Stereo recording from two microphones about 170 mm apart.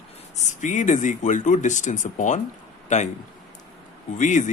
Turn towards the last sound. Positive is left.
turn(degrees=45)  # may be behind; listen again after turning